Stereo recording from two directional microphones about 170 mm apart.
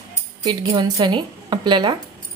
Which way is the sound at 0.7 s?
25° right (ahead or behind).